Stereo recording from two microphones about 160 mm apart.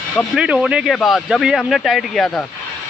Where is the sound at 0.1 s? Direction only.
5° left (ahead or behind).